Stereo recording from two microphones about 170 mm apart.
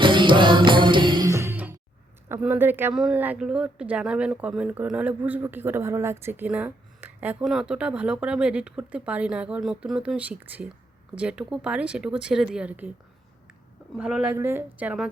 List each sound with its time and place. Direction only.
0.0 s music: 30° right (ahead or behind); by 1.7 s 10° right (ahead or behind)
2.3 s speech: 10° right (ahead or behind)
14.0 s speech: 5° right (ahead or behind)